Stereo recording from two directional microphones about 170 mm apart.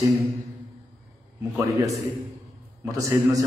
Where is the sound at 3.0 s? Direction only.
20° right (ahead or behind).